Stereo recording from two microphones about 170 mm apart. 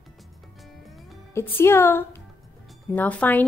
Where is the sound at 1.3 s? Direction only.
15° left (ahead or behind).